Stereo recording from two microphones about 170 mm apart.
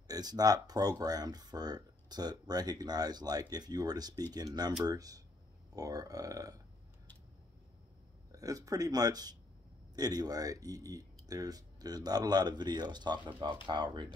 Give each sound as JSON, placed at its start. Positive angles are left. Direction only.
{"t": 0.1, "sound": "speech", "side_deg": -20}
{"t": 8.3, "sound": "speech", "side_deg": -20}